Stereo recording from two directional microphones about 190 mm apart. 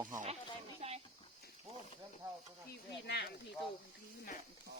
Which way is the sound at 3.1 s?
60° left (ahead or behind).